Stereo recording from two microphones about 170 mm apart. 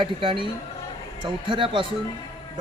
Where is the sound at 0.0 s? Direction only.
30° right (ahead or behind).